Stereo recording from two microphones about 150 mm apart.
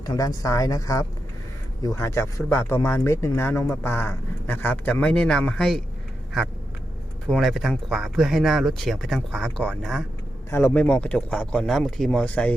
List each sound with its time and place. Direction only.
0.0 s speech: 25° left (ahead or behind); by 5.8 s centre (ahead or behind)
7.3 s speech: centre (ahead or behind)
10.5 s speech: 10° left (ahead or behind)